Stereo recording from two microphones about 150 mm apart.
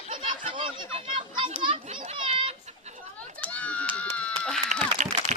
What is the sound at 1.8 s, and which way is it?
Speech, 50° right (ahead or behind).